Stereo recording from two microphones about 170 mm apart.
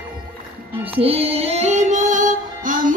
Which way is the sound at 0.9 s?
35° right (ahead or behind).